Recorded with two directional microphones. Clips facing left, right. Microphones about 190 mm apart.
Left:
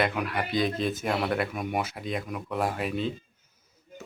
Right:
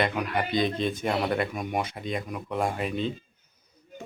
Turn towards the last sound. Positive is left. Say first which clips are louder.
# right 1 dB
turn(degrees=5)  # may be behind; listen again after turning